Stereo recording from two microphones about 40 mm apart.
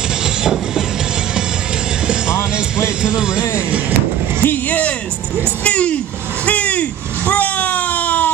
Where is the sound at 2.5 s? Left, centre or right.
Right.